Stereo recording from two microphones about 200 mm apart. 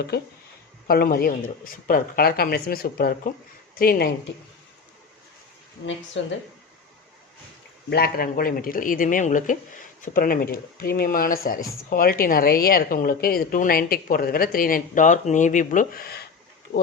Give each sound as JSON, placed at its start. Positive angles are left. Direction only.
{"t": 0.1, "sound": "speech", "side_deg": 50}
{"t": 5.8, "sound": "speech", "side_deg": 65}
{"t": 7.9, "sound": "speech", "side_deg": 50}